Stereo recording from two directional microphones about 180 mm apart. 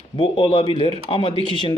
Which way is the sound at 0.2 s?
30° left (ahead or behind).